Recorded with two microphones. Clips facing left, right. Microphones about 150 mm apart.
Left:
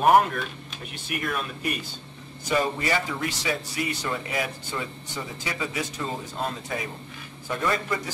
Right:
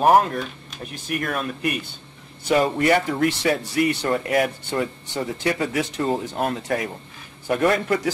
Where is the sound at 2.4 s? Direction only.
65° right (ahead or behind).